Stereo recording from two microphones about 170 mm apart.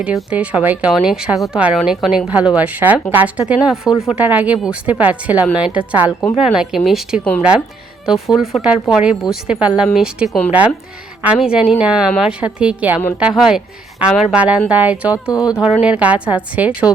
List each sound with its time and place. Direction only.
0.0 s a woman's voice: 5° right (ahead or behind)
8.4 s a woman's voice: 5° right (ahead or behind)
15.1 s speech: 20° left (ahead or behind)
15.6 s speech: 5° right (ahead or behind)